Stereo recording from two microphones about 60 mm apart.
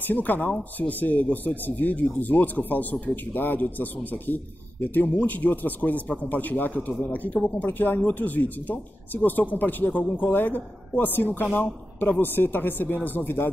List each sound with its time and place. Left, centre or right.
0.0 s speech: left